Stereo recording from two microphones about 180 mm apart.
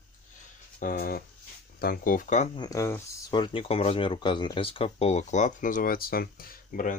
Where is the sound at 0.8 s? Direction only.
55° left (ahead or behind); by 2.6 s 40° left (ahead or behind).